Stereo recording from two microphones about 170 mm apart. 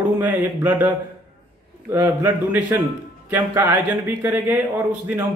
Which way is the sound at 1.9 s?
15° right (ahead or behind).